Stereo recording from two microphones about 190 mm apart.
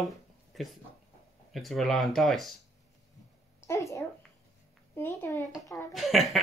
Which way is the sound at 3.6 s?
15° left (ahead or behind).